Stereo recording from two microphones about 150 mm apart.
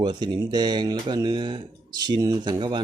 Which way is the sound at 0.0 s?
30° right (ahead or behind).